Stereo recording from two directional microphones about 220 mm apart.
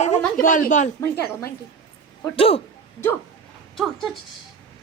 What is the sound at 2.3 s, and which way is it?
Speech, 25° left (ahead or behind).